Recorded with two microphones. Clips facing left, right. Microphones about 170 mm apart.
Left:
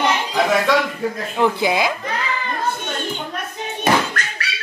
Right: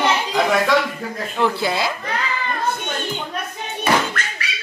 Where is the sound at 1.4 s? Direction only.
15° left (ahead or behind).